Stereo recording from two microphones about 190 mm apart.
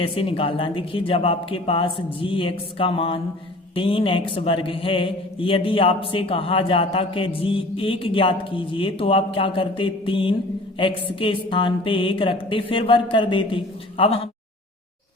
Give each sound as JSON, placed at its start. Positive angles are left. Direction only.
{"t": 0.0, "sound": "speech", "side_deg": 30}